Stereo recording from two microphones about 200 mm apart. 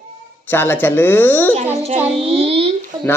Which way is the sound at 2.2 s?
30° right (ahead or behind).